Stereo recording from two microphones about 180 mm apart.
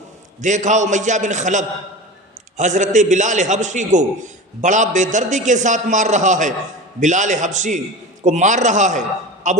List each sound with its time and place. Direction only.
0.4 s a man's voice: 45° right (ahead or behind)